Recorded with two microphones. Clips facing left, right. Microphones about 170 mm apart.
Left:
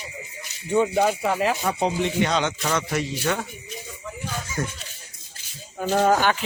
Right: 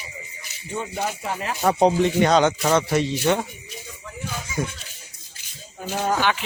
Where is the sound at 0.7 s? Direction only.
90° left.